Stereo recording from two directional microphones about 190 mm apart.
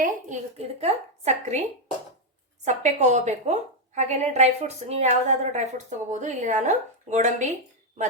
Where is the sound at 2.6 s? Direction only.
40° right (ahead or behind).